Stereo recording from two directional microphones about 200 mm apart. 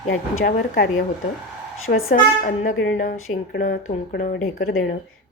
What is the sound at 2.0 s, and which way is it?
Speech, 45° left (ahead or behind).